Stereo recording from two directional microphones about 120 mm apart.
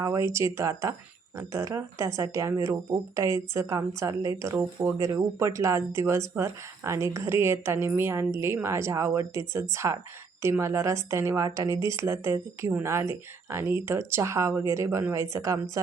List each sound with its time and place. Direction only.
0.0 s speech: 25° right (ahead or behind)